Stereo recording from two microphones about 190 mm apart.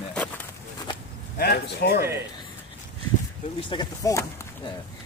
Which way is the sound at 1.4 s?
55° left (ahead or behind).